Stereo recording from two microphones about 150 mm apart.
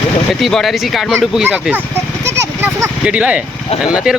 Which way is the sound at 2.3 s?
15° right (ahead or behind).